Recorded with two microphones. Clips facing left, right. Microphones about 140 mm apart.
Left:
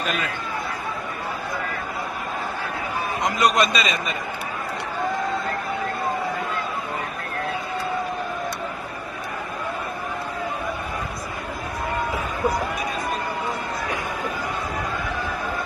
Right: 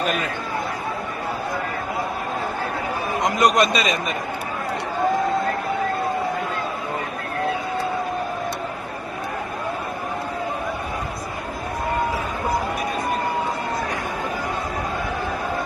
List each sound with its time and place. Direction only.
3.4 s a man's voice: 45° right (ahead or behind)